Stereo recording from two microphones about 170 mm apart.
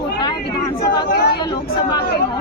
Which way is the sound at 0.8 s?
70° left (ahead or behind).